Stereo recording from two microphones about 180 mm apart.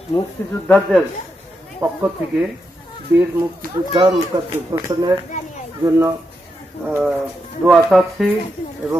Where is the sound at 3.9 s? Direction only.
25° right (ahead or behind); by 8.3 s 5° right (ahead or behind).